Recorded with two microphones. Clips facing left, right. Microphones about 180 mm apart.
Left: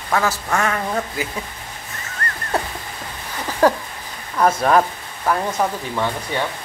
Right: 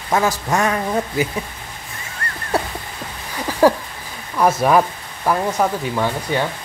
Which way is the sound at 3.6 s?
10° right (ahead or behind).